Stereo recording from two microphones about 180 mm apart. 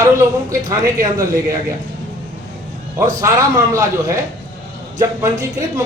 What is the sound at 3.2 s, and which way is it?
Speech, 15° right (ahead or behind).